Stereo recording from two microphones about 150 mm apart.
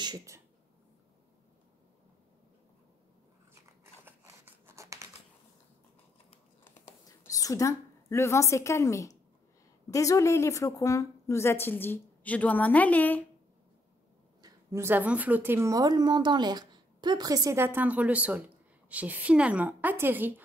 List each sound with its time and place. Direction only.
0.0 s speech: 25° right (ahead or behind)
3.8 s scissors: 15° right (ahead or behind)
6.6 s a sound: 20° left (ahead or behind)
9.8 s a woman's voice: 20° left (ahead or behind)
14.4 s a woman's voice: 15° right (ahead or behind)